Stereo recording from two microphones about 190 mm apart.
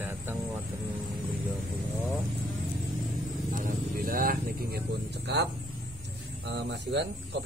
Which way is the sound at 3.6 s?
45° right (ahead or behind).